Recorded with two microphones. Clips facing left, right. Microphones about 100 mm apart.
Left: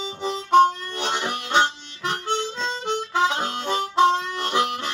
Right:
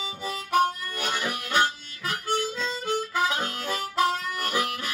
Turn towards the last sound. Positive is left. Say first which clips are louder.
# left 5 dB
turn(degrees=25)  # may be behind; listen again after turning